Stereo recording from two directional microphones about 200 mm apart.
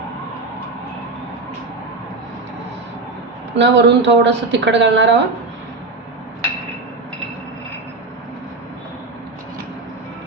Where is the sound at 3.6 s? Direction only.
60° right (ahead or behind).